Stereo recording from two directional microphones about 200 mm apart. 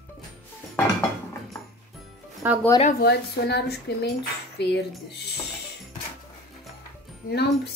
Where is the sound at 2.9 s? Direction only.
55° left (ahead or behind).